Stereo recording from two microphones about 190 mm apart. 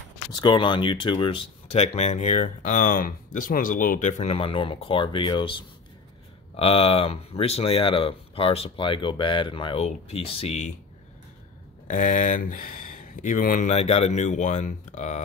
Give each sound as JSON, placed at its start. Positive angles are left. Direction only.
{"t": 0.3, "sound": "speech", "side_deg": 25}
{"t": 11.9, "sound": "speech", "side_deg": 40}